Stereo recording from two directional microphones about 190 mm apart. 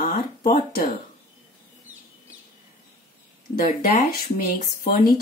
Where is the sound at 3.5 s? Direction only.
45° left (ahead or behind).